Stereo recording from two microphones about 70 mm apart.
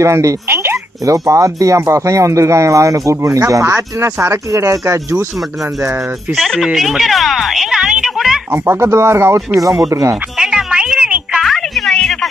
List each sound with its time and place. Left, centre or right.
0.0 s speech: right
6.3 s a woman's voice: centre
8.5 s speech: right
10.3 s music: centre
11.4 s music: centre
11.9 s a sound: centre